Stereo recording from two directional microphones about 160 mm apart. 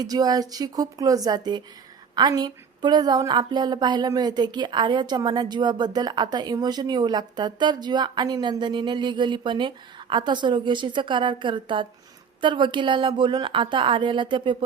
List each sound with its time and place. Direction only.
0.0 s a woman's voice: 25° right (ahead or behind)